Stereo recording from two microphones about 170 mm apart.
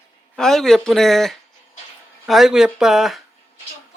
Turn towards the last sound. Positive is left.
turn(degrees=0)  # may be behind; listen again after turning